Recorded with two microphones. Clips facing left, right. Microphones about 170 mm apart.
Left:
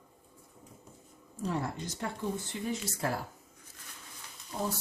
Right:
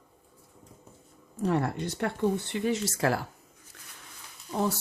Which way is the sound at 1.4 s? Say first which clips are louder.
Right 7 dB; 65° right (ahead or behind).